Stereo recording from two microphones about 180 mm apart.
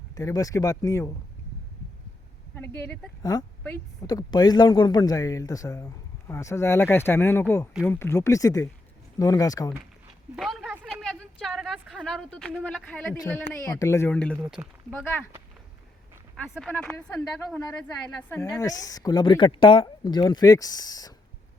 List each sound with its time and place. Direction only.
0.2 s speech: 20° left (ahead or behind)
2.6 s speech: 10° left (ahead or behind)
3.3 s a man's voice: 20° left (ahead or behind)
10.3 s a sound: centre (ahead or behind)
13.6 s speech: 15° left (ahead or behind)
14.4 s speech: 5° right (ahead or behind)
16.3 s a man's voice: 5° left (ahead or behind); by 21.1 s 20° left (ahead or behind)